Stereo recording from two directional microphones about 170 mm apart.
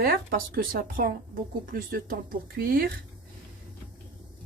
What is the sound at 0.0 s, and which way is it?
Speech, 60° right (ahead or behind).